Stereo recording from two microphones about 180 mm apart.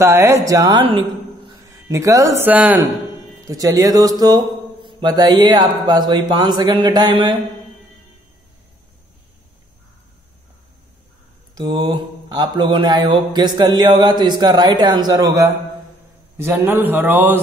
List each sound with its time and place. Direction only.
0.0 s speech: 15° right (ahead or behind)
1.9 s a man's voice: 15° right (ahead or behind)
3.4 s speech: 20° right (ahead or behind)
11.5 s a man's voice: 20° right (ahead or behind)